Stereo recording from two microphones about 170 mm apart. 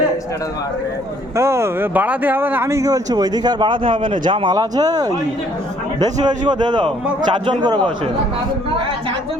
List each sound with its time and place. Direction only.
1.4 s speech: 15° right (ahead or behind)